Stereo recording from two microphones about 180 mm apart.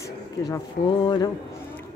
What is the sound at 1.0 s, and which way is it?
Speech, 25° left (ahead or behind).